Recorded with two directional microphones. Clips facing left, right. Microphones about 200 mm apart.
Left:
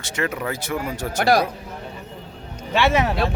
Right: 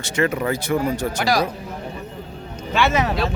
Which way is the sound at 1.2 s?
55° left (ahead or behind).